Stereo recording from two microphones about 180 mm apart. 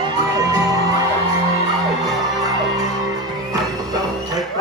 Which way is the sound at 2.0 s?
20° right (ahead or behind).